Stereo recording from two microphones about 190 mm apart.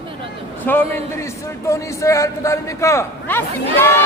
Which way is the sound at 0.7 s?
10° left (ahead or behind).